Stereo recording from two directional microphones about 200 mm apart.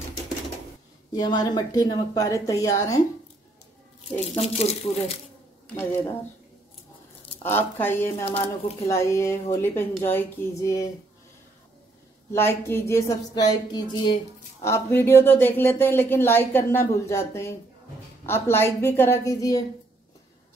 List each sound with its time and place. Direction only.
1.1 s speech: 20° left (ahead or behind)
4.4 s speech: 30° left (ahead or behind)
7.4 s speech: 10° left (ahead or behind)
8.3 s speech: 30° left (ahead or behind)
8.8 s speech: 15° left (ahead or behind)
12.3 s speech: 10° left (ahead or behind)